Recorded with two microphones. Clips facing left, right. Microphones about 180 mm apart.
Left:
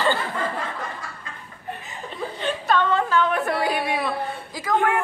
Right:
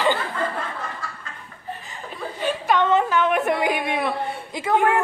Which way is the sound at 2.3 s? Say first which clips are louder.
Right 1 dB; 10° right (ahead or behind).